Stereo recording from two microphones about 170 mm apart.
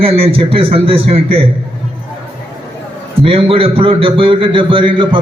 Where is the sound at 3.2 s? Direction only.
35° right (ahead or behind).